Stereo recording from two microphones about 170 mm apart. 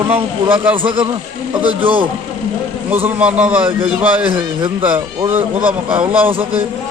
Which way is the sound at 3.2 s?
5° right (ahead or behind).